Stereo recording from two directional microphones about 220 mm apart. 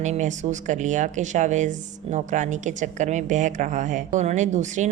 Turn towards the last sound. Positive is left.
turn(degrees=-35)  # may be behind; listen again after turning